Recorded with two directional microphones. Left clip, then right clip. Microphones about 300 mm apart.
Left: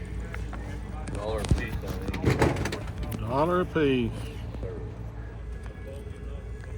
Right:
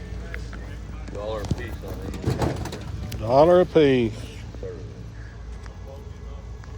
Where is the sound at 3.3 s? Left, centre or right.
Centre.